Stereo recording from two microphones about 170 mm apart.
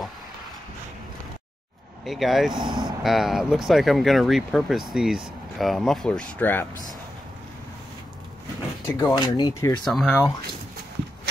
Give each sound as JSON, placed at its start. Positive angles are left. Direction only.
{"t": 2.0, "sound": "speech", "side_deg": 0}
{"t": 2.5, "sound": "speech", "side_deg": -25}
{"t": 3.0, "sound": "speech", "side_deg": 0}
{"t": 8.8, "sound": "speech", "side_deg": 20}
{"t": 9.8, "sound": "speech", "side_deg": 0}